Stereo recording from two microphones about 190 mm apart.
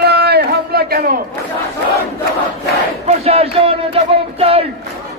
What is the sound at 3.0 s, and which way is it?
Battle cry, 35° right (ahead or behind).